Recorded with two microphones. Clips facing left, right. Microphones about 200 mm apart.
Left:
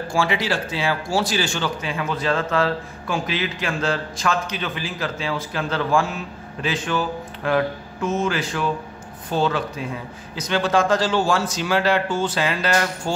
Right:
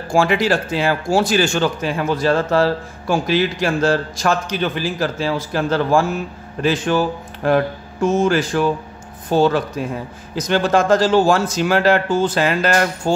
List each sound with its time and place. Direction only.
0.1 s speech: 50° right (ahead or behind)
8.2 s speech: 45° right (ahead or behind)